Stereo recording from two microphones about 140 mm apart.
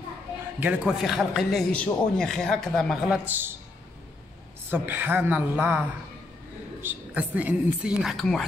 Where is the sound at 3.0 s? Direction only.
10° right (ahead or behind).